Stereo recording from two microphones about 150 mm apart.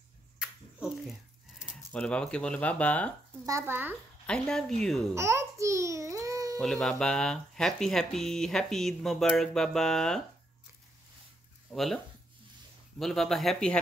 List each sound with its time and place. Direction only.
0.4 s a sound: 5° right (ahead or behind)
1.9 s speech: 5° left (ahead or behind)
3.4 s speech: 20° right (ahead or behind)
4.3 s speech: 5° left (ahead or behind)
5.1 s babbling: 20° right (ahead or behind)
6.6 s speech: 5° left (ahead or behind)
11.7 s speech: centre (ahead or behind)
13.0 s speech: centre (ahead or behind)